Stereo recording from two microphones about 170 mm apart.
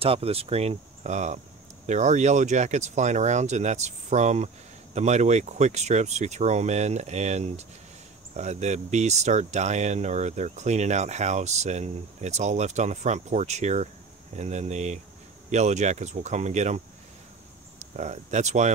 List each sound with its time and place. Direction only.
0.0 s speech: 35° right (ahead or behind)